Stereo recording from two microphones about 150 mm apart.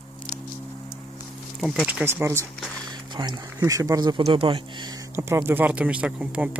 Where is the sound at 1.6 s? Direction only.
5° right (ahead or behind).